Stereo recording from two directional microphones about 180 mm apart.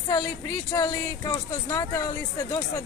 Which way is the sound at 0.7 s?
20° left (ahead or behind).